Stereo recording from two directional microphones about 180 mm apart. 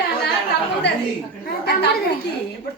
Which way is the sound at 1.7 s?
65° left (ahead or behind).